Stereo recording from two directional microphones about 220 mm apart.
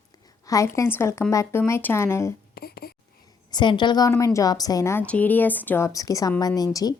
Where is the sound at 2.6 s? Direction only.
45° left (ahead or behind).